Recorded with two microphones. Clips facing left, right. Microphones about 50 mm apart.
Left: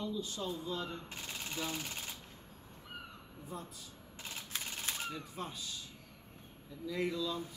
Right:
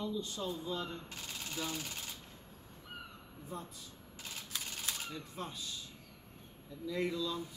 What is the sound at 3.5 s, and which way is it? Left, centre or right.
Speech, centre.